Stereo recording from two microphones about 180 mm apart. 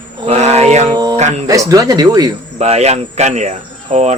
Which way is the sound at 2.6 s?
35° right (ahead or behind).